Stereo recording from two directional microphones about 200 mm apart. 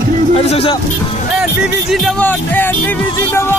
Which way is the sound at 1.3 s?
Centre (ahead or behind).